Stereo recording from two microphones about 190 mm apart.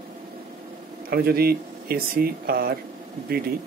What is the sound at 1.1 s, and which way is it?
Speech, 55° right (ahead or behind).